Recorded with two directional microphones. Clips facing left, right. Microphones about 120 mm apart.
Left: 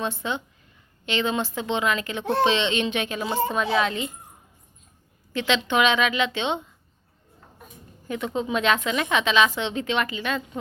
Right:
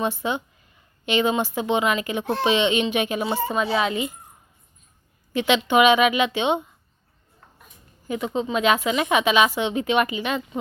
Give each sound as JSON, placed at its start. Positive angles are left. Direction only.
{"t": 0.0, "sound": "a woman's voice", "side_deg": -15}
{"t": 5.3, "sound": "a woman's voice", "side_deg": -15}
{"t": 8.0, "sound": "a woman's voice", "side_deg": -5}